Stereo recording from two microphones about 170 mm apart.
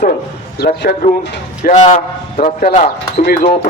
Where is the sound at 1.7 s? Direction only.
45° left (ahead or behind).